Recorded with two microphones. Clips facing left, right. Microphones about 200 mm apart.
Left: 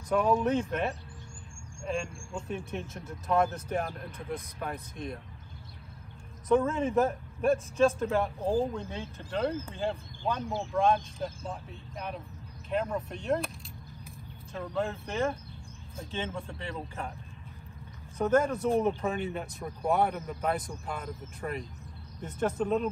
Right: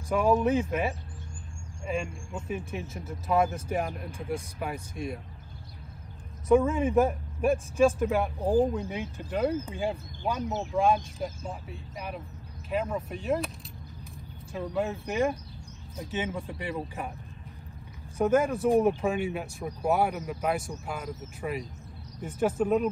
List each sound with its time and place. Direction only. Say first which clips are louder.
0.1 s a man's voice: right 2 dB; 5° right (ahead or behind)
6.5 s a man's voice: right 3 dB; 15° right (ahead or behind)
12.6 s speech: right 1 dB; 5° right (ahead or behind)
14.5 s a man's voice: right 2 dB; 10° right (ahead or behind)
18.1 s a man's voice: right 2 dB; 10° right (ahead or behind)